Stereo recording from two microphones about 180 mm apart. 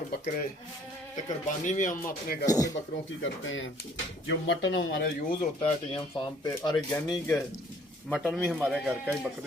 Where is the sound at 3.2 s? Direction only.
90° left; by 5.1 s 70° left (ahead or behind).